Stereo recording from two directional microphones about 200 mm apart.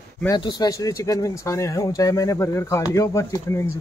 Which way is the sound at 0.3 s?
20° left (ahead or behind).